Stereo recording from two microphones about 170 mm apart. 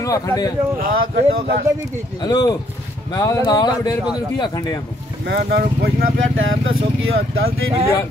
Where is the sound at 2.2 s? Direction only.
25° left (ahead or behind).